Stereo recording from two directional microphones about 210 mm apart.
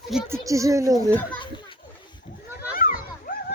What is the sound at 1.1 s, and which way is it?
Speech, 10° left (ahead or behind).